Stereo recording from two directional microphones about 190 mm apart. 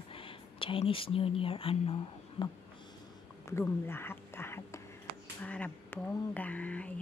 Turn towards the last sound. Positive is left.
turn(degrees=5)  # may be behind; listen again after turning